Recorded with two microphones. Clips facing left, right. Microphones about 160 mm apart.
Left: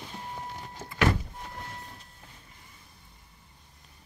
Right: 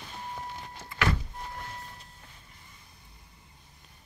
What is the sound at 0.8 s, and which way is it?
Power windows, 45° left (ahead or behind).